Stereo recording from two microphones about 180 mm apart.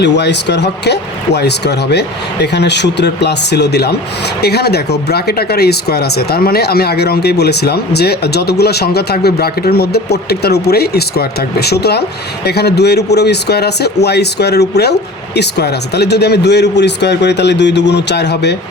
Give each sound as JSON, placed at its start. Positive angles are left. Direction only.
{"t": 0.0, "sound": "speech", "side_deg": 70}